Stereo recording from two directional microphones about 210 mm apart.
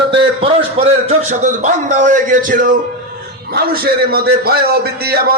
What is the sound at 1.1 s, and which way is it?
A man's voice, 35° right (ahead or behind).